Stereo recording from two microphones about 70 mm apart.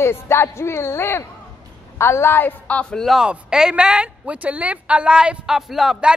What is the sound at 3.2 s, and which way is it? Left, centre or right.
A woman's voice, centre.